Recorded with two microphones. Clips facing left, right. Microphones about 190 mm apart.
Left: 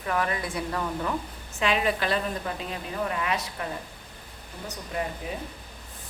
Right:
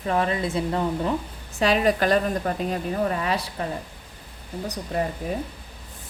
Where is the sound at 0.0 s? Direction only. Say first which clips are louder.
Right 5 dB; 25° right (ahead or behind).